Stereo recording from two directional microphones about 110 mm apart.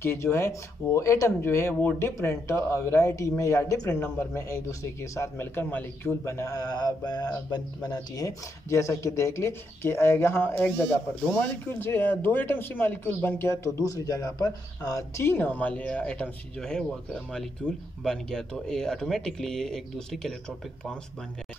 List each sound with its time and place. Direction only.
0.0 s speech: 25° left (ahead or behind); by 21.0 s 10° left (ahead or behind)